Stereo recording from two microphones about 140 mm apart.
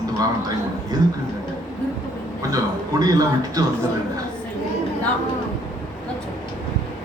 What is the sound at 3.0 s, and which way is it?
Speech, 25° right (ahead or behind).